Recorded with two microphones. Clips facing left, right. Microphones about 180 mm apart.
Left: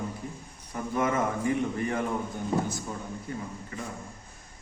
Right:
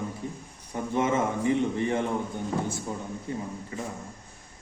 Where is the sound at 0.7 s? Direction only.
25° right (ahead or behind).